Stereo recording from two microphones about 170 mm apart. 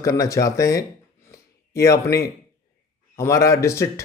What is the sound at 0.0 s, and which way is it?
Speech, 20° left (ahead or behind).